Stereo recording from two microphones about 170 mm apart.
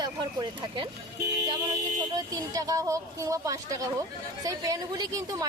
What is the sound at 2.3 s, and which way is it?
A woman's voice, 20° right (ahead or behind).